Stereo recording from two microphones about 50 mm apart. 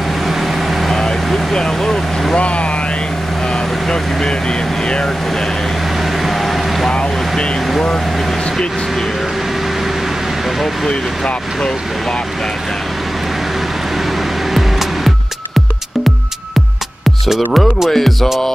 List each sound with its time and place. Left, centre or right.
0.3 s vehicle: centre
0.9 s vehicle: centre
2.3 s vehicle: left
3.5 s speech: centre
6.2 s a sound: centre
6.9 s vehicle: centre
10.9 s speech: centre
17.3 s speech: centre